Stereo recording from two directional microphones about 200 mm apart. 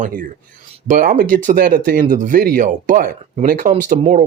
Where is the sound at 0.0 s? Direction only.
45° right (ahead or behind).